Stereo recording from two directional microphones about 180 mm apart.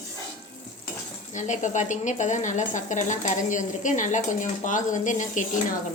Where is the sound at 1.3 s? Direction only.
40° left (ahead or behind).